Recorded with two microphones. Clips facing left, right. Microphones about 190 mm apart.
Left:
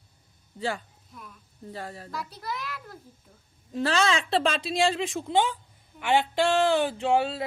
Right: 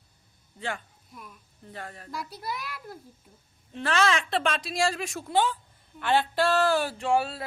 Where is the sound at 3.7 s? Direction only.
35° left (ahead or behind).